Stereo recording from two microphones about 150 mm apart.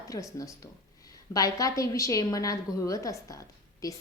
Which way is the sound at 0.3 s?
25° left (ahead or behind).